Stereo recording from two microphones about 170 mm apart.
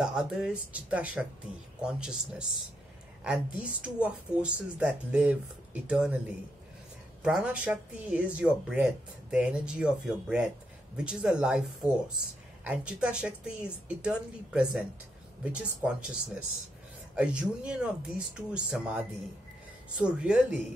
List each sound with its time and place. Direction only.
0.0 s speech: 5° right (ahead or behind)
7.2 s speech: 5° right (ahead or behind)
17.1 s speech: 5° right (ahead or behind)